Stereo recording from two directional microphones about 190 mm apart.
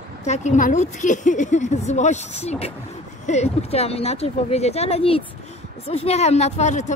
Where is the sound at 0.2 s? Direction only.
40° left (ahead or behind).